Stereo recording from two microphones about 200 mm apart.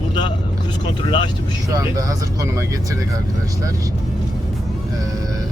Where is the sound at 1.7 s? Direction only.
15° right (ahead or behind).